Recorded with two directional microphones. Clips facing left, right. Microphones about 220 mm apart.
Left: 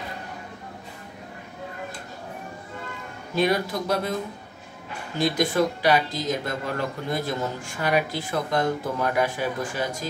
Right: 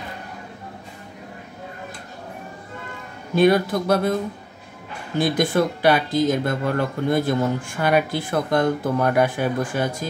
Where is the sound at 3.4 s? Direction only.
55° right (ahead or behind).